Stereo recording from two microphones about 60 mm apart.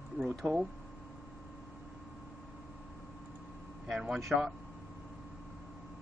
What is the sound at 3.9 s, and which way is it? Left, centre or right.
Speech, centre.